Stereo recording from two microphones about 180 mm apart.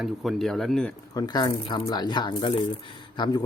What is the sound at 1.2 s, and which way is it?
Speech, 20° left (ahead or behind).